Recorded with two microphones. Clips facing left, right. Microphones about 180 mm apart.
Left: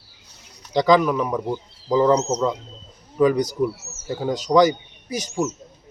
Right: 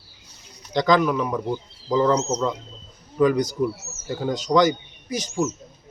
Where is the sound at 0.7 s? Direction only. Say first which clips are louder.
Left 2 dB; 5° left (ahead or behind).